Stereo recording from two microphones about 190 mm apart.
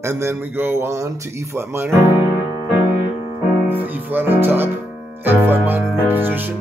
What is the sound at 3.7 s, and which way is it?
Music, 10° right (ahead or behind).